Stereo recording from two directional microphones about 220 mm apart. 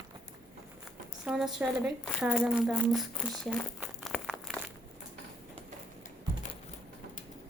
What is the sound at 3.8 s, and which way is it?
Crumpling, centre (ahead or behind).